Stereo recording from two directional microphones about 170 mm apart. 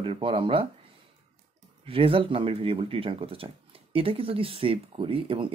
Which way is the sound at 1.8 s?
35° right (ahead or behind).